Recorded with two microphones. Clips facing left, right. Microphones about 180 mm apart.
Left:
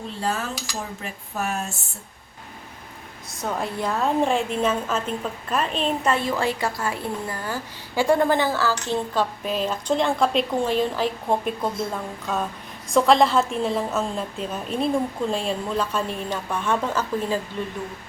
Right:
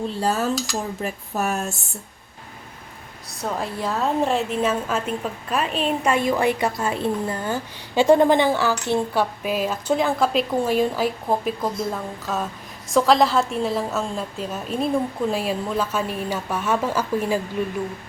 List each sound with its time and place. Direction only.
0.2 s cutlery: 40° right (ahead or behind)
1.0 s speech: 45° right (ahead or behind)
3.2 s a woman's voice: centre (ahead or behind)